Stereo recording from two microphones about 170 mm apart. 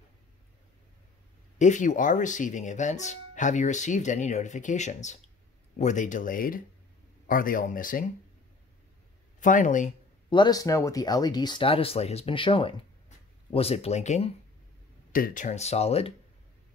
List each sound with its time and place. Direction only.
1.6 s speech: 45° left (ahead or behind)
9.4 s speech: 50° left (ahead or behind)
10.3 s speech: 25° left (ahead or behind); by 14.3 s 40° left (ahead or behind)
15.1 s speech: 55° left (ahead or behind); by 16.1 s 35° left (ahead or behind)